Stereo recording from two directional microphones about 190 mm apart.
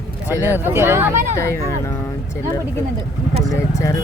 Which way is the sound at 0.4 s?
10° right (ahead or behind).